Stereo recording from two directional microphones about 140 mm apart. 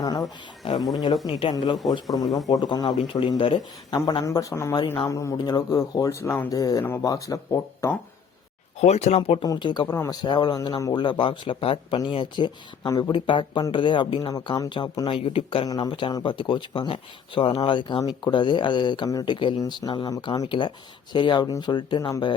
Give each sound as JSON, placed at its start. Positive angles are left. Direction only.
{"t": 0.0, "sound": "speech", "side_deg": 25}
{"t": 0.6, "sound": "speech", "side_deg": 40}
{"t": 1.5, "sound": "speech", "side_deg": 30}
{"t": 2.0, "sound": "speech", "side_deg": 0}
{"t": 2.5, "sound": "speech", "side_deg": 30}
{"t": 4.1, "sound": "speech", "side_deg": 25}
{"t": 8.8, "sound": "speech", "side_deg": 50}
{"t": 9.4, "sound": "speech", "side_deg": 30}